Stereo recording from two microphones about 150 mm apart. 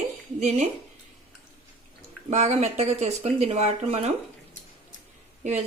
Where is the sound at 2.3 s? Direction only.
50° right (ahead or behind).